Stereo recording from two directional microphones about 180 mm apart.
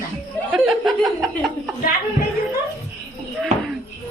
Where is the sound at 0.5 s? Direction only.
Centre (ahead or behind).